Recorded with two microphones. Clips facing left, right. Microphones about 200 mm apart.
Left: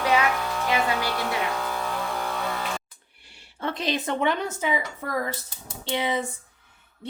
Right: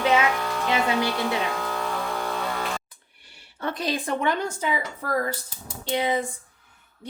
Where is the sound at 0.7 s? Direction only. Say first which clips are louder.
Right 2 dB; 25° right (ahead or behind).